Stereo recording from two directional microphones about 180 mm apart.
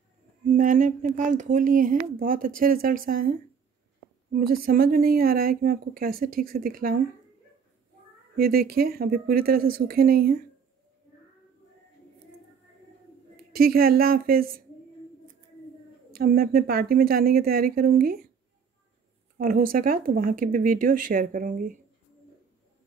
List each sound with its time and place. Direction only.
0.5 s a woman's voice: 45° right (ahead or behind)
8.4 s a woman's voice: 55° right (ahead or behind)
13.6 s a woman's voice: 55° right (ahead or behind)
16.1 s a woman's voice: 55° right (ahead or behind)
19.3 s speech: 50° right (ahead or behind)